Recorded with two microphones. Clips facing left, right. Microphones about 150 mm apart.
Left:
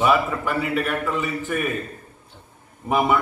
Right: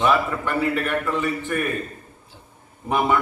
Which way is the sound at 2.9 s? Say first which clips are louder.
Left 1 dB; 5° left (ahead or behind).